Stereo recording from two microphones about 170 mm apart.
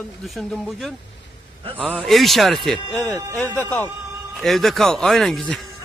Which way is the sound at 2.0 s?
Centre (ahead or behind).